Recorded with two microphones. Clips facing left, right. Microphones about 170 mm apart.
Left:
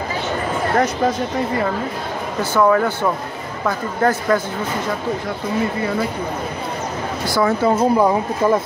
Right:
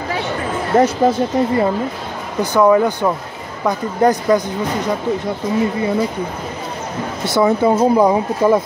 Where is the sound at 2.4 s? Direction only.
15° right (ahead or behind).